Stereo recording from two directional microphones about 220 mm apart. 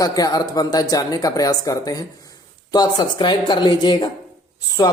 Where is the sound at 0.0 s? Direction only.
15° left (ahead or behind).